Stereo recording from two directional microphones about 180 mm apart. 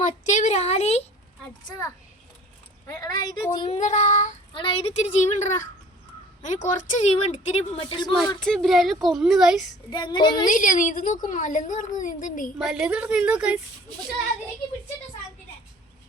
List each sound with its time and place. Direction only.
0.0 s a woman's voice: 40° left (ahead or behind)
2.8 s a woman's voice: 15° left (ahead or behind)
3.7 s a woman's voice: 40° left (ahead or behind)
4.5 s a woman's voice: 30° left (ahead or behind)
7.8 s a woman's voice: 25° left (ahead or behind)
8.4 s a woman's voice: 5° left (ahead or behind)
9.9 s a woman's voice: 25° left (ahead or behind)
10.4 s a woman's voice: 45° left (ahead or behind)
12.5 s a woman's voice: 5° right (ahead or behind)